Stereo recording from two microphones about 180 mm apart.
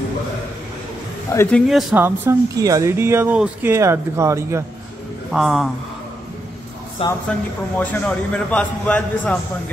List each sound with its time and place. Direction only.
1.3 s a man's voice: 15° left (ahead or behind)
1.7 s speech: centre (ahead or behind)
2.0 s speech: 15° right (ahead or behind)
5.3 s speech: centre (ahead or behind)
7.0 s speech: 30° left (ahead or behind)
7.8 s a man's voice: 5° left (ahead or behind)